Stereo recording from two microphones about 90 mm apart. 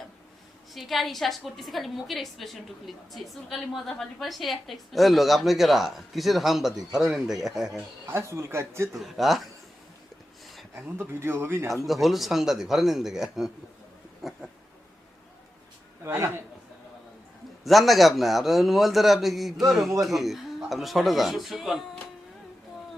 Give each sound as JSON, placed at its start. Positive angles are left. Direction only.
{"t": 0.7, "sound": "a woman's voice", "side_deg": 0}
{"t": 8.0, "sound": "speech", "side_deg": -30}
{"t": 8.9, "sound": "a woman's voice", "side_deg": 0}
{"t": 10.8, "sound": "speech", "side_deg": -25}
{"t": 11.9, "sound": "a woman's voice", "side_deg": 0}
{"t": 14.2, "sound": "a sound", "side_deg": -5}
{"t": 16.0, "sound": "speech", "side_deg": -30}
{"t": 17.6, "sound": "a woman's voice", "side_deg": 0}